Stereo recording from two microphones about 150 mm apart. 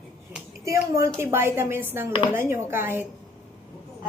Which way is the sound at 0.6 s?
20° right (ahead or behind).